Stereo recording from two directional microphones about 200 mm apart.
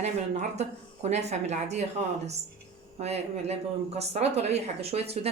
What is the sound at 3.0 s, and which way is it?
A woman's voice, 30° right (ahead or behind).